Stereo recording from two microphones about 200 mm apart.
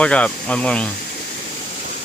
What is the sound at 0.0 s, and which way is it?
Speech, 5° left (ahead or behind).